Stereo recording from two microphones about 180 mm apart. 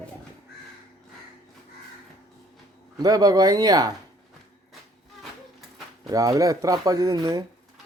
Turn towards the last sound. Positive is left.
turn(degrees=-20)  # may be behind; listen again after turning